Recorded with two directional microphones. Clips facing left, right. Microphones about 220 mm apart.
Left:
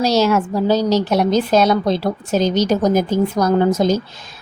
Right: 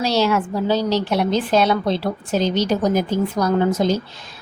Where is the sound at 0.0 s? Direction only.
40° left (ahead or behind).